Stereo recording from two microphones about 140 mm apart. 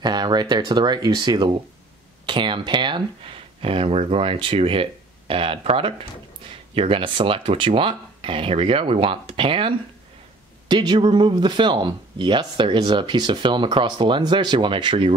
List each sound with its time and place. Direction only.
0.0 s speech: 30° right (ahead or behind)